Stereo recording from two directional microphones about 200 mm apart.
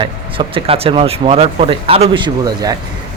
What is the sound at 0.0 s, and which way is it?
Speech, 25° right (ahead or behind).